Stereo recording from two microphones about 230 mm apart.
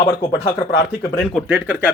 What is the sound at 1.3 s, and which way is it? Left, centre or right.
Speech, centre.